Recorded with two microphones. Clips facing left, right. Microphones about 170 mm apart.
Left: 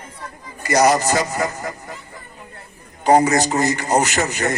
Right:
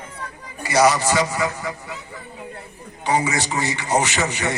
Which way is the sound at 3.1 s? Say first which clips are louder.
Left 7 dB; 40° left (ahead or behind).